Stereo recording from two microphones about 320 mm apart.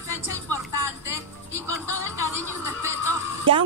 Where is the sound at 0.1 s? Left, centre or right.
Left.